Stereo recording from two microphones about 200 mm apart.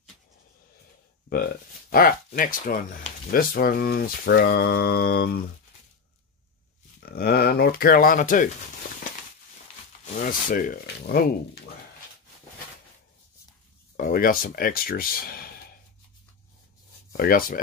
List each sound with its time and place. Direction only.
1.9 s speech: 45° left (ahead or behind)
7.1 s speech: 50° left (ahead or behind)
10.0 s speech: 45° left (ahead or behind)
13.9 s speech: 45° left (ahead or behind)
17.2 s speech: 45° left (ahead or behind)